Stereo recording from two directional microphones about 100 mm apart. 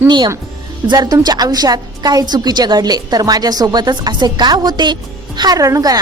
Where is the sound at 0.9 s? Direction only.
40° right (ahead or behind).